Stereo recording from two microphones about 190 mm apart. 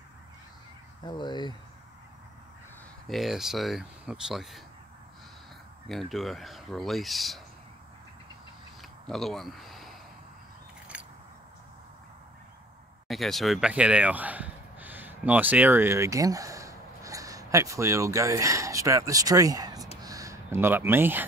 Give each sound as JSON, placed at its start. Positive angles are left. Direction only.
{"t": 1.0, "sound": "speech", "side_deg": 25}
{"t": 3.1, "sound": "speech", "side_deg": 0}
{"t": 5.9, "sound": "speech", "side_deg": 0}
{"t": 9.0, "sound": "speech", "side_deg": 0}
{"t": 10.9, "sound": "scissors", "side_deg": -5}
{"t": 13.1, "sound": "speech", "side_deg": 0}
{"t": 20.0, "sound": "a sound", "side_deg": -20}